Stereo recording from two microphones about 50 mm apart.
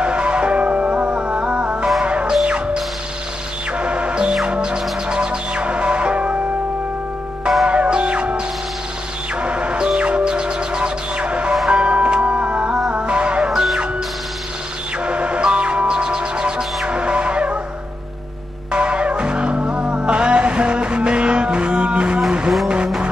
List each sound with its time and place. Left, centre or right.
0.0 s music: centre
7.6 s music: centre
9.4 s music: right
13.5 s music: centre
15.0 s music: right
18.7 s music: centre